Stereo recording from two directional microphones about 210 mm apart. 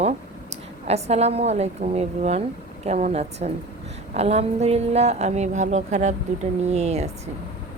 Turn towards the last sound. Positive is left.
turn(degrees=-30)  # may be behind; listen again after turning